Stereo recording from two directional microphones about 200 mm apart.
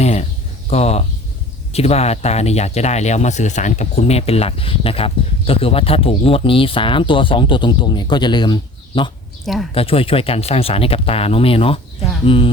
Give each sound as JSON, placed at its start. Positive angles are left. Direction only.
{"t": 0.0, "sound": "a sound", "side_deg": 35}
{"t": 0.7, "sound": "speech", "side_deg": 30}
{"t": 9.4, "sound": "a woman's voice", "side_deg": 0}
{"t": 9.7, "sound": "speech", "side_deg": 30}